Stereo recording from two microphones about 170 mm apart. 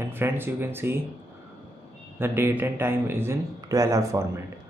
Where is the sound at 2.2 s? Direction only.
15° right (ahead or behind).